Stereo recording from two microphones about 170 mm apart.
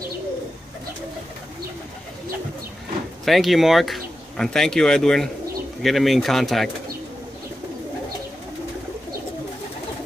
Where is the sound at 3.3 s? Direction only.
Centre (ahead or behind).